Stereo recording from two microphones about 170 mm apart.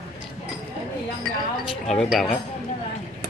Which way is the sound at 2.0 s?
Centre (ahead or behind).